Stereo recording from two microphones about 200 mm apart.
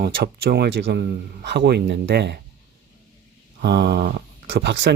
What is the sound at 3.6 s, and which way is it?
Speech, 55° right (ahead or behind).